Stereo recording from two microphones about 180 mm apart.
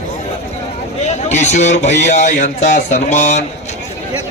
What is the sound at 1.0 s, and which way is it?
A man's voice, 40° left (ahead or behind).